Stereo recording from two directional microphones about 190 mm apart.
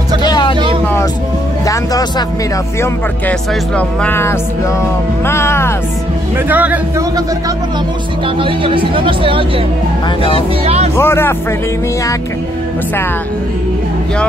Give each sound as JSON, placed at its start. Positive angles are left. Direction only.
{"t": 0.2, "sound": "vehicle", "side_deg": 25}
{"t": 1.7, "sound": "speech", "side_deg": 20}
{"t": 2.8, "sound": "speech", "side_deg": 5}
{"t": 6.3, "sound": "speech", "side_deg": -10}
{"t": 8.4, "sound": "speech", "side_deg": -25}
{"t": 10.6, "sound": "speech", "side_deg": -35}
{"t": 11.0, "sound": "speech", "side_deg": 10}